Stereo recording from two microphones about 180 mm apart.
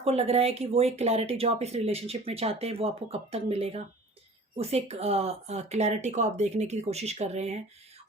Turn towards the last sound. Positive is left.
turn(degrees=-35)  # may be behind; listen again after turning